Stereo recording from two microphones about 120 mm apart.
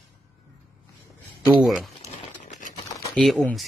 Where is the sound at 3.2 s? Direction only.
5° left (ahead or behind).